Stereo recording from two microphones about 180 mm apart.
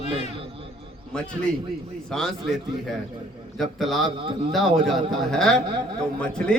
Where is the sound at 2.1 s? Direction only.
Centre (ahead or behind).